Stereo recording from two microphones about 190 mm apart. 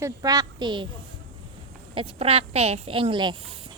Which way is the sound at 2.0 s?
30° right (ahead or behind).